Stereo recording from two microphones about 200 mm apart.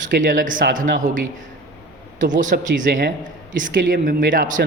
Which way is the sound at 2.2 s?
40° right (ahead or behind).